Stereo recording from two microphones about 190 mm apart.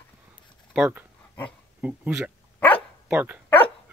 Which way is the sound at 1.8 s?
5° right (ahead or behind).